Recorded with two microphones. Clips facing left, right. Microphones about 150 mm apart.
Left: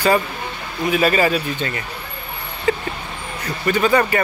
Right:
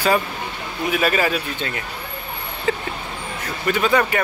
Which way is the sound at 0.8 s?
Centre (ahead or behind).